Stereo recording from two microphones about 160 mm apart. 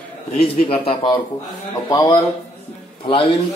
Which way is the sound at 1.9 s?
25° left (ahead or behind).